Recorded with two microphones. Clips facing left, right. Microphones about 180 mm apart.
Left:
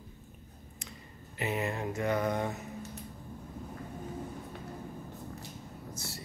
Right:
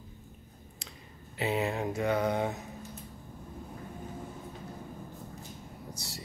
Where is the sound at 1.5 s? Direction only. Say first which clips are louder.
Right 3 dB; 15° right (ahead or behind).